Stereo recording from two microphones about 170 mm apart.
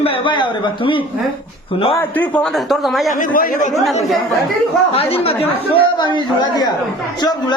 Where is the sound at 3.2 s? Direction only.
55° left (ahead or behind).